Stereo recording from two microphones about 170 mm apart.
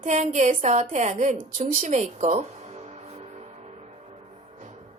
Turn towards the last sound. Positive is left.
turn(degrees=-40)  # may be behind; listen again after turning